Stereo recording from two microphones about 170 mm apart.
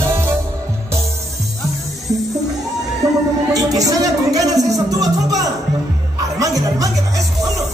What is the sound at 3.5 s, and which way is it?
Speech, 20° right (ahead or behind).